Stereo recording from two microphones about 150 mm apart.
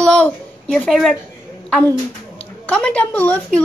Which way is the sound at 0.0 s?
5° left (ahead or behind).